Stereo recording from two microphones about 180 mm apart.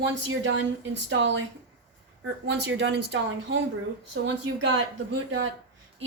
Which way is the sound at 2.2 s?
80° right.